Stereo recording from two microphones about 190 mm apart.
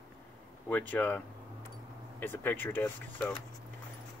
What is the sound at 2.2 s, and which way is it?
Speech, 10° left (ahead or behind).